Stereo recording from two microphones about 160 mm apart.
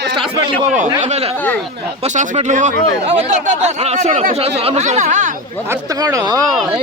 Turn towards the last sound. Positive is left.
turn(degrees=-25)  # may be behind; listen again after turning